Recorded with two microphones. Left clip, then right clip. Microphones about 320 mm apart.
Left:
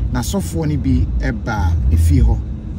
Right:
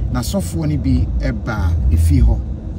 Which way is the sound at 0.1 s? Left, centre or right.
Centre.